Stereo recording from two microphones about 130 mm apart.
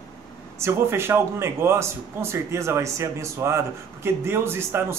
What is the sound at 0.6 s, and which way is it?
Speech, 20° right (ahead or behind).